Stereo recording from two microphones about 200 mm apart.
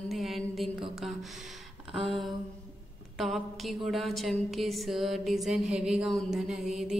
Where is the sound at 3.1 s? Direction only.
Centre (ahead or behind).